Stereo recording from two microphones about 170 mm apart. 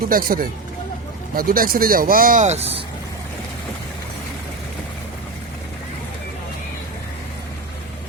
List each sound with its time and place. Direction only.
0.1 s speech: 55° right (ahead or behind); by 2.8 s 40° right (ahead or behind)